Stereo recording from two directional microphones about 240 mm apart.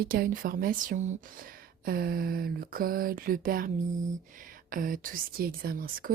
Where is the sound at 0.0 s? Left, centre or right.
Right.